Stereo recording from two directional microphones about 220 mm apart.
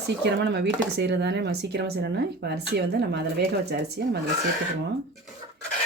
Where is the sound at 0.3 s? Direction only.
50° right (ahead or behind).